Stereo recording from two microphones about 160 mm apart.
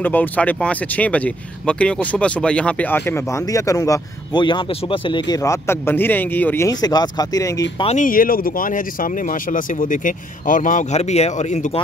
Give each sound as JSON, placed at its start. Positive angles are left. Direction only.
{"t": 0.0, "sound": "speech", "side_deg": 10}
{"t": 7.8, "sound": "speech", "side_deg": 50}